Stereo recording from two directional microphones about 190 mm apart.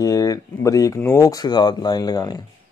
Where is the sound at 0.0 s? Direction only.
20° left (ahead or behind).